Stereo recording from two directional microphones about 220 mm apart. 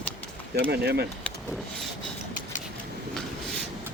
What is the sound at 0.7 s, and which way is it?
Speech, 45° right (ahead or behind).